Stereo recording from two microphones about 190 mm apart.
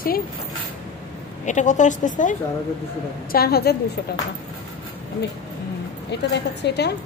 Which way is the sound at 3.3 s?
55° left (ahead or behind).